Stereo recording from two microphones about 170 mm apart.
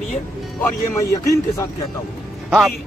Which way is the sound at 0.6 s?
20° left (ahead or behind).